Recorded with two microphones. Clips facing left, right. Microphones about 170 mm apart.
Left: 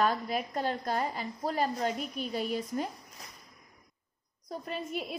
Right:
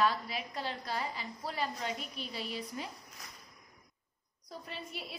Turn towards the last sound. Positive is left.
turn(degrees=50)  # may be behind; listen again after turning